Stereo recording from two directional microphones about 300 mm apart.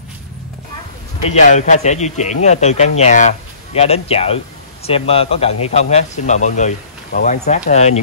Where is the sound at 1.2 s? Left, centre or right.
Left.